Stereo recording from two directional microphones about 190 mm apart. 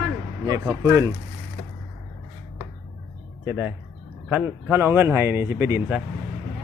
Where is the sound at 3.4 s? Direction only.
5° right (ahead or behind).